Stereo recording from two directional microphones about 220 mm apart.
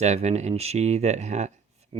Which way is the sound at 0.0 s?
30° right (ahead or behind).